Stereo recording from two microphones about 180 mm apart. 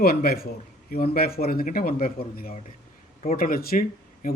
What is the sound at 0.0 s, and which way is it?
Speech, 60° left (ahead or behind).